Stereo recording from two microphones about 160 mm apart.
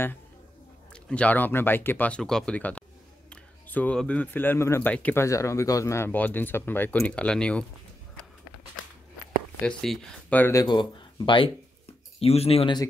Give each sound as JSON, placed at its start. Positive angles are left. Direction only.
{"t": 0.9, "sound": "speech", "side_deg": 5}
{"t": 9.6, "sound": "speech", "side_deg": 5}
{"t": 10.6, "sound": "speech", "side_deg": 30}